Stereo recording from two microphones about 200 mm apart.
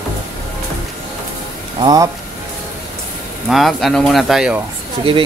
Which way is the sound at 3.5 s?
Centre (ahead or behind).